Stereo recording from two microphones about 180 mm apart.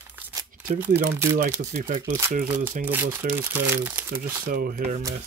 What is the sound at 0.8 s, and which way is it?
Speech, 15° right (ahead or behind).